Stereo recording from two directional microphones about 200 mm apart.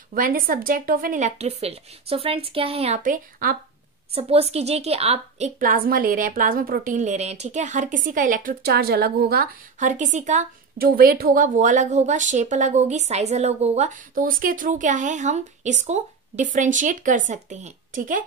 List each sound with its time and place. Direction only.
0.1 s a woman's voice: 45° right (ahead or behind)
4.1 s a woman's voice: 30° right (ahead or behind)
10.8 s a woman's voice: 50° right (ahead or behind)